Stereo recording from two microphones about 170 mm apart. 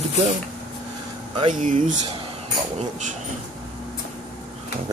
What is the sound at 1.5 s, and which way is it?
Speech, 50° right (ahead or behind).